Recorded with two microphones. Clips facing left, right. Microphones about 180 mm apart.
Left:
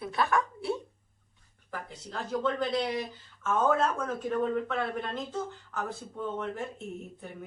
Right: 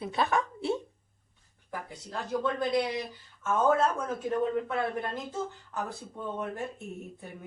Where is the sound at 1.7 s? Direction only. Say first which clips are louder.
Right 1 dB; 10° right (ahead or behind).